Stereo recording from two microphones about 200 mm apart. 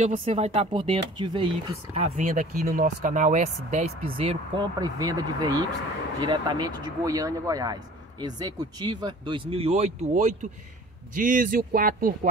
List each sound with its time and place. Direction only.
0.0 s speech: 35° right (ahead or behind)
2.0 s speech: 35° right (ahead or behind)